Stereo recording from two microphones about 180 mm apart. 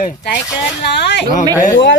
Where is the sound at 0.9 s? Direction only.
70° left (ahead or behind).